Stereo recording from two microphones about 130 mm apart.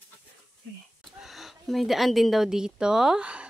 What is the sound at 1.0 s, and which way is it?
A woman's voice, centre (ahead or behind).